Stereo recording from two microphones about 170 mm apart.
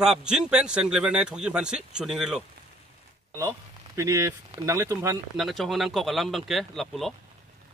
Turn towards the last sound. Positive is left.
turn(degrees=0)  # may be behind; listen again after turning